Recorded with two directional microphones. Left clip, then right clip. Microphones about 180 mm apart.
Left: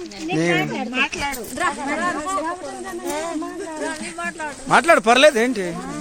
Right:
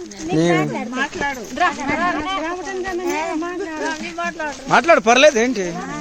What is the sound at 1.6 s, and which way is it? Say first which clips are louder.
Speech: right 4 dB; 40° right (ahead or behind).